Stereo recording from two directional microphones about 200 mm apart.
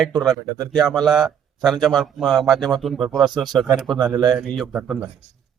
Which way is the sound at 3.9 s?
20° right (ahead or behind).